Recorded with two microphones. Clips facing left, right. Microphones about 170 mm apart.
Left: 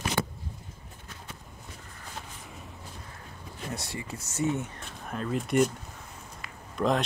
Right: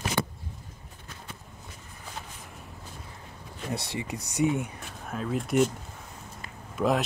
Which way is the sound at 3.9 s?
20° right (ahead or behind).